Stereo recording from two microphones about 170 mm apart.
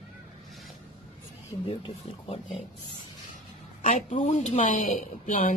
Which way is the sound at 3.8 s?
45° left (ahead or behind).